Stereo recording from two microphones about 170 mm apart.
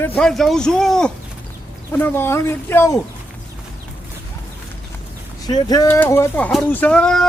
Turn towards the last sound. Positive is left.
turn(degrees=5)  # may be behind; listen again after turning